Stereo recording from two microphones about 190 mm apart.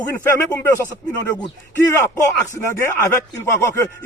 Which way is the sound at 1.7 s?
10° left (ahead or behind).